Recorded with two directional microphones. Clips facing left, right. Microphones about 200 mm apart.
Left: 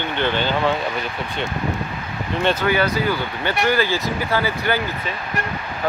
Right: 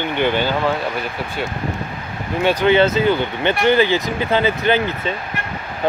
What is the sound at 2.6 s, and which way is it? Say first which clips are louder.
Speech: right 5 dB; 25° right (ahead or behind).